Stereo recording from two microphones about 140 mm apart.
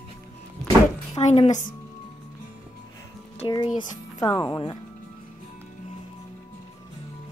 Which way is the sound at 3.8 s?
30° left (ahead or behind).